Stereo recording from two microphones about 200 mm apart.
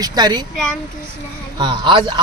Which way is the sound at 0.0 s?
20° right (ahead or behind).